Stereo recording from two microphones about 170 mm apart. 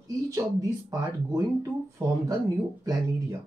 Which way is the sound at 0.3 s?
20° right (ahead or behind).